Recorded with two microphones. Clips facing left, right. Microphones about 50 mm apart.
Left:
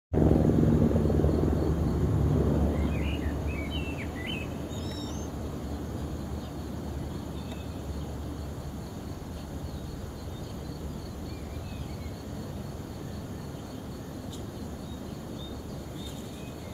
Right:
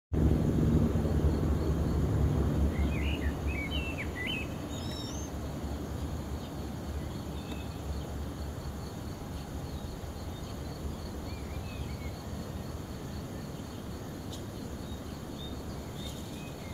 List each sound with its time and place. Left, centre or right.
0.1 s vehicle: left